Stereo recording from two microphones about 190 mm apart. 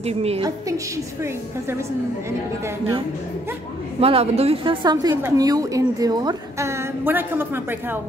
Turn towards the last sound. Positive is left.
turn(degrees=-10)  # may be behind; listen again after turning